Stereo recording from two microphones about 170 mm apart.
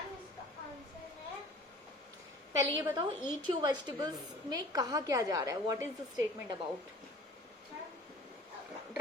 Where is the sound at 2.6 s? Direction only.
20° right (ahead or behind).